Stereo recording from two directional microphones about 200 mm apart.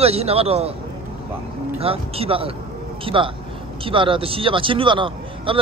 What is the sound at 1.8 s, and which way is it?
A man's voice, 30° right (ahead or behind).